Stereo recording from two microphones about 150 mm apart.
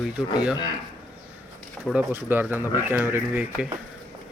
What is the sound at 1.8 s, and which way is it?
Speech, 10° right (ahead or behind).